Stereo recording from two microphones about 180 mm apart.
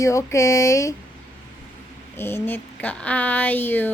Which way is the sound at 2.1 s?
10° left (ahead or behind).